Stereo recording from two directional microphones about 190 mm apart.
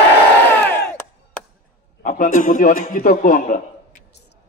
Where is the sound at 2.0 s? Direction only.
45° left (ahead or behind).